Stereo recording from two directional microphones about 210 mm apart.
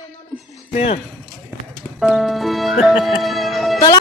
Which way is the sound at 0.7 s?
30° left (ahead or behind).